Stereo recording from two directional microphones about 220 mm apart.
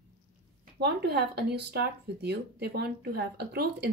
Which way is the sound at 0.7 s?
50° right (ahead or behind).